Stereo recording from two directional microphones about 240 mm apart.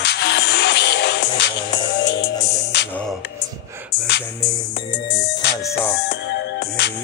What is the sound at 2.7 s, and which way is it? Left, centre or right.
Music, left.